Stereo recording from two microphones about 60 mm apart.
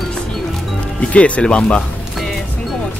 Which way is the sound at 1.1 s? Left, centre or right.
Left.